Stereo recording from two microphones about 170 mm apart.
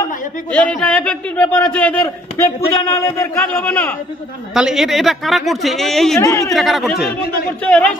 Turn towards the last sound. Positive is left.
turn(degrees=10)  # may be behind; listen again after turning